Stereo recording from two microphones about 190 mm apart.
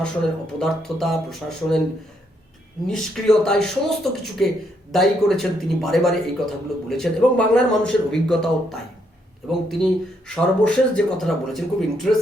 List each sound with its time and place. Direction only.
0.6 s speech: centre (ahead or behind)
2.8 s speech: 5° left (ahead or behind)